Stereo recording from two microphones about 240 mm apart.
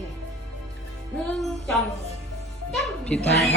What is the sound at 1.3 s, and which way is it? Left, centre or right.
A woman's voice, centre.